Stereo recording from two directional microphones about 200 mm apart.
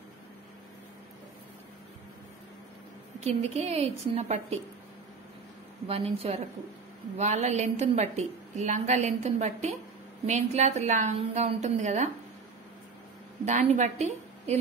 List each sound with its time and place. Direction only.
3.2 s a woman's voice: 30° right (ahead or behind)
5.9 s a woman's voice: 30° right (ahead or behind)
13.5 s a woman's voice: 35° right (ahead or behind)